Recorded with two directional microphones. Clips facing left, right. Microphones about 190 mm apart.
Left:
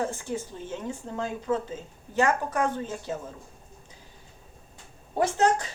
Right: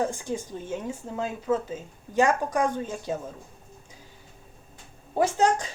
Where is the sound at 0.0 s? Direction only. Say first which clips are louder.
Right 2 dB; 15° right (ahead or behind).